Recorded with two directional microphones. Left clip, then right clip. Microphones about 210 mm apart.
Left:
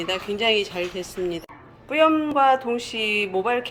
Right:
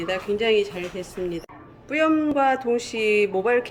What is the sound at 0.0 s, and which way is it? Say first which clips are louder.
Speech: even; 5° right (ahead or behind).